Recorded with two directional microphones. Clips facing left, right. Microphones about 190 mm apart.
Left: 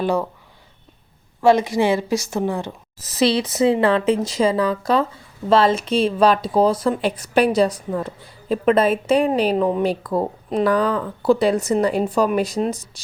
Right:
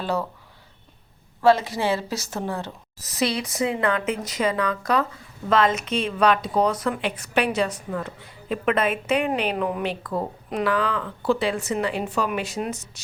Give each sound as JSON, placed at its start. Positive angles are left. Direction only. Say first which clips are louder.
{"t": 0.0, "sound": "speech", "louder": "left 5 dB", "side_deg": 15}
{"t": 1.4, "sound": "speech", "louder": "left 4 dB", "side_deg": 15}
{"t": 3.1, "sound": "speech", "louder": "left 7 dB", "side_deg": 30}